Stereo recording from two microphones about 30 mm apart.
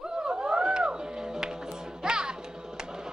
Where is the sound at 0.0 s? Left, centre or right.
Right.